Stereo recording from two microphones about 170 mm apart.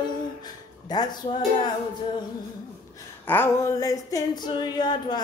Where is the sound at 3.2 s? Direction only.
10° left (ahead or behind).